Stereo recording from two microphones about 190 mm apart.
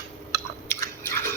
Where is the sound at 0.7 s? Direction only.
10° left (ahead or behind).